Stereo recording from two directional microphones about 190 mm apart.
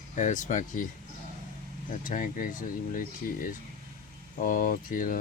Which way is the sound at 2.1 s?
45° left (ahead or behind).